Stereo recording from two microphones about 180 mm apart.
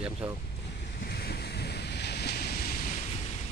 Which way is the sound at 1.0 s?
60° left (ahead or behind).